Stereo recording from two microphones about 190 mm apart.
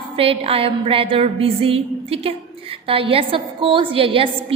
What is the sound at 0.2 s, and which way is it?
A woman's voice, 30° right (ahead or behind).